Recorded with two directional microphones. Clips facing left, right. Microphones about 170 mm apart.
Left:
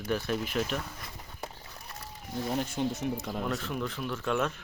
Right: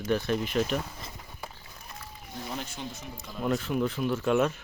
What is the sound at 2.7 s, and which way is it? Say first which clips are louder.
Speech: left 9 dB; 60° left (ahead or behind).